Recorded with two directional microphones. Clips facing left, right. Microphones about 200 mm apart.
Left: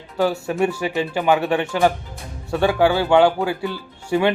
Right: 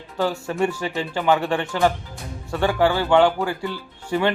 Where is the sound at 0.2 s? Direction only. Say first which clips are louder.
Left 3 dB; 10° left (ahead or behind).